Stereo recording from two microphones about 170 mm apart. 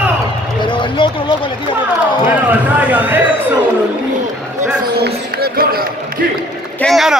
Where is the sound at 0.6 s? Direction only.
30° left (ahead or behind).